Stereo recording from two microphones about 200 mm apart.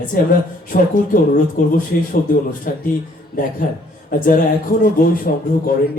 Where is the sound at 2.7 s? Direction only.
45° left (ahead or behind).